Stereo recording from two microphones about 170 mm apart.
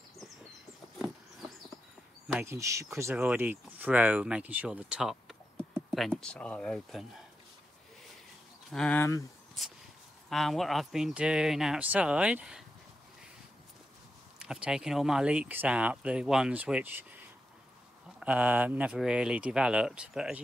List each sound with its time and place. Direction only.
0.9 s a sound: centre (ahead or behind)
2.4 s speech: 15° right (ahead or behind); by 7.2 s centre (ahead or behind)
8.6 s speech: 5° left (ahead or behind)
14.4 s speech: 5° right (ahead or behind)
18.2 s speech: 5° right (ahead or behind)